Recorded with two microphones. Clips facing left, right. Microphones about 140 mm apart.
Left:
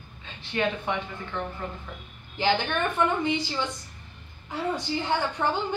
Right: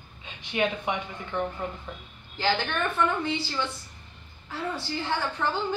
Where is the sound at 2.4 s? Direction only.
15° left (ahead or behind).